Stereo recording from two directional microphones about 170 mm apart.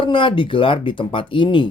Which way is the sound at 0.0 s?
30° left (ahead or behind).